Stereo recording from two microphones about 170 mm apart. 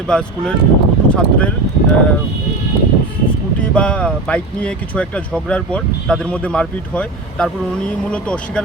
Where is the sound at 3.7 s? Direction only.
5° left (ahead or behind).